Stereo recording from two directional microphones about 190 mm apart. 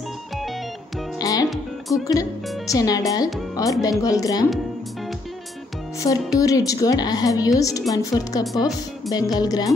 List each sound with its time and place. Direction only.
1.1 s music: 20° left (ahead or behind)
1.5 s speech: centre (ahead or behind)
2.0 s a woman's voice: 15° left (ahead or behind)
5.9 s a woman's voice: 20° left (ahead or behind)